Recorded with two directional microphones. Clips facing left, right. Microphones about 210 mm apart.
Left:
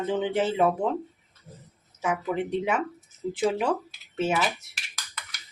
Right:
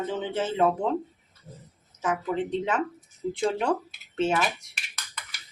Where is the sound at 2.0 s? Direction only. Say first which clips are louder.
Even; 10° left (ahead or behind).